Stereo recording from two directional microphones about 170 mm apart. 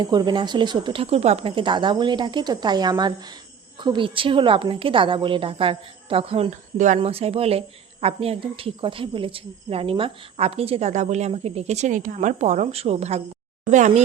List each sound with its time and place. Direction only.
0.0 s speech: 25° right (ahead or behind)
6.5 s speech: 45° right (ahead or behind)